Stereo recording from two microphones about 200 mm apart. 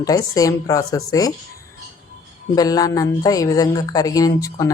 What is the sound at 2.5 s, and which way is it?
Speech, 20° left (ahead or behind).